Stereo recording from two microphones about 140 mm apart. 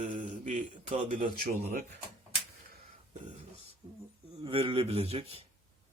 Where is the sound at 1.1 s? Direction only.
85° right.